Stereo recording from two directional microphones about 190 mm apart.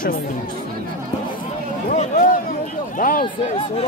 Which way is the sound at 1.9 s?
45° left (ahead or behind).